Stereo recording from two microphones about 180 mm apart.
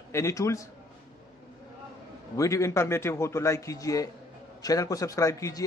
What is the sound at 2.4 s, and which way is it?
A man's voice, 15° left (ahead or behind).